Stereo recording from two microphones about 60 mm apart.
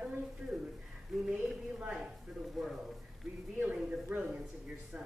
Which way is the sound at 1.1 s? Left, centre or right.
Centre.